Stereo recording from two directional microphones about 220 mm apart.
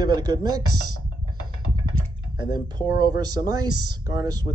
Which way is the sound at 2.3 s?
20° right (ahead or behind).